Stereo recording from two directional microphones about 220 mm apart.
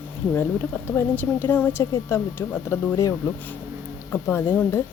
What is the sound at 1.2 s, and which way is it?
A woman's voice, 10° left (ahead or behind).